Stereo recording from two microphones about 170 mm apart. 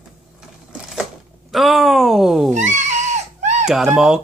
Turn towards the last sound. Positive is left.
turn(degrees=-5)  # may be behind; listen again after turning